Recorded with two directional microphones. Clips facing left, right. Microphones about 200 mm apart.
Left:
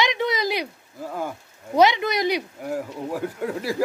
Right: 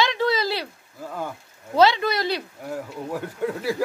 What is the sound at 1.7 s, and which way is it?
Speech, 15° left (ahead or behind).